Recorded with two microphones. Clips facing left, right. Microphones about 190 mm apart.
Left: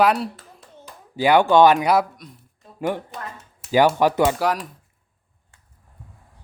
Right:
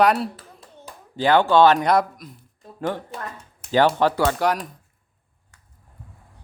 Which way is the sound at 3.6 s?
10° left (ahead or behind).